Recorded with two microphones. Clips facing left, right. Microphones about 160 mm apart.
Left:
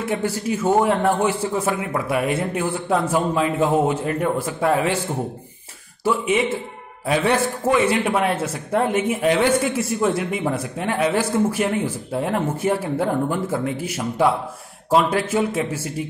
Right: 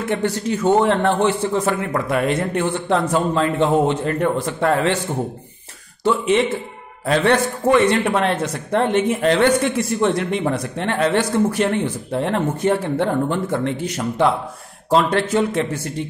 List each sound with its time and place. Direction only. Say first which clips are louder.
0.0 s a man's voice: right 2 dB; 5° left (ahead or behind)